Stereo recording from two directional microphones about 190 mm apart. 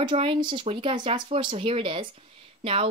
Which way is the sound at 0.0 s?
30° right (ahead or behind).